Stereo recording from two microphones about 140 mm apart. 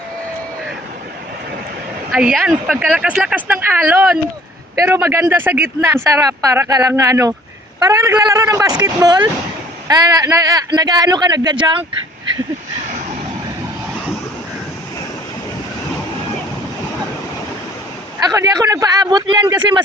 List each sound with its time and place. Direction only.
2.1 s speech: 5° right (ahead or behind); by 11.9 s 35° right (ahead or behind)
18.3 s speech: 25° right (ahead or behind)